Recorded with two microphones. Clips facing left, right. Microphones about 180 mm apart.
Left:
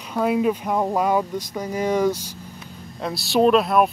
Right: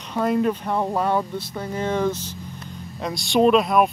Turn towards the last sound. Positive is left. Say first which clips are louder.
# even
turn(degrees=0)  # may be behind; listen again after turning